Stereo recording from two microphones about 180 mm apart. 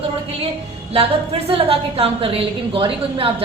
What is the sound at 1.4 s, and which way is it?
A woman's voice, 30° right (ahead or behind).